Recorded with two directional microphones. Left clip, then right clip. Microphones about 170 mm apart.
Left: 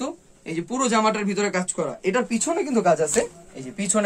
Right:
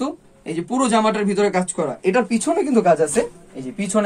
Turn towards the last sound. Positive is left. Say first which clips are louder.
# right 3 dB
turn(degrees=20)  # may be behind; listen again after turning